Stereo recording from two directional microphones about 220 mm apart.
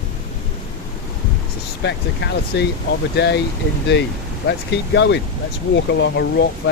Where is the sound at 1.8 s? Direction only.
50° left (ahead or behind).